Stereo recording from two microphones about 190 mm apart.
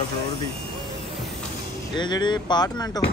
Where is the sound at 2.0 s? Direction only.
25° left (ahead or behind).